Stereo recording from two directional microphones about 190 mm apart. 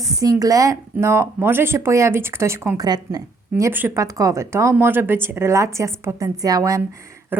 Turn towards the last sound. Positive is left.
turn(degrees=-20)  # may be behind; listen again after turning